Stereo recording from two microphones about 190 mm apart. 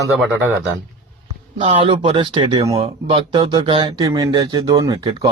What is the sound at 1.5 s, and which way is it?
Speech, 30° right (ahead or behind).